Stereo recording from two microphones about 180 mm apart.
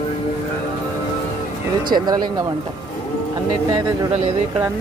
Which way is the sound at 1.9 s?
25° right (ahead or behind).